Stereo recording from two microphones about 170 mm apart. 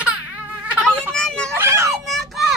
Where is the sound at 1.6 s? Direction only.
15° right (ahead or behind).